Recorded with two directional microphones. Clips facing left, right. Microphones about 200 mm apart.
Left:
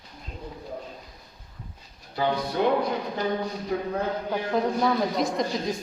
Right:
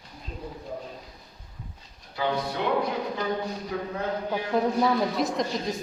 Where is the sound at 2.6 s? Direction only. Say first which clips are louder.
Left 6 dB; 45° left (ahead or behind).